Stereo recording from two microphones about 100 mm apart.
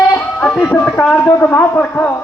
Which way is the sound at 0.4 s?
15° left (ahead or behind).